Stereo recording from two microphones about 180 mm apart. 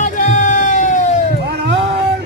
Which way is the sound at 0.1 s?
45° left (ahead or behind).